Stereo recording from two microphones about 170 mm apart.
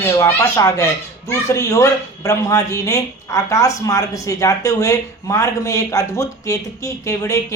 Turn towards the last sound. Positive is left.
turn(degrees=20)  # may be behind; listen again after turning